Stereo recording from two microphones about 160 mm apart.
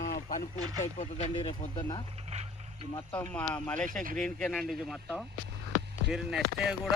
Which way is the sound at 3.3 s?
10° left (ahead or behind).